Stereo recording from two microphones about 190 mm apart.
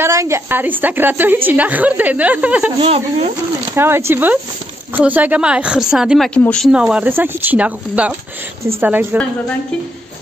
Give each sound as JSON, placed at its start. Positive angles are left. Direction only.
{"t": 0.0, "sound": "a woman's voice", "side_deg": -15}
{"t": 2.8, "sound": "speech", "side_deg": -30}
{"t": 3.7, "sound": "a woman's voice", "side_deg": -15}